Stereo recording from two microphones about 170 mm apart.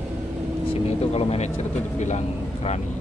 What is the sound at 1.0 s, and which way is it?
Speech, 35° left (ahead or behind).